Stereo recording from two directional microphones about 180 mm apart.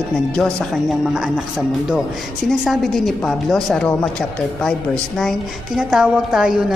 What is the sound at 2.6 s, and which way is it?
A woman's voice, centre (ahead or behind).